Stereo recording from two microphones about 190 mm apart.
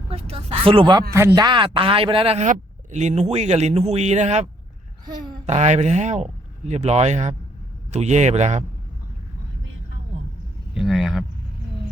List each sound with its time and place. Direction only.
0.1 s speech: 30° right (ahead or behind)
5.5 s speech: 35° right (ahead or behind)
10.8 s a sound: centre (ahead or behind)